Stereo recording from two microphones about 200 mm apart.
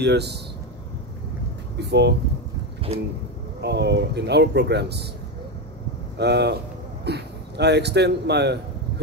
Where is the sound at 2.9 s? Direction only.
30° right (ahead or behind).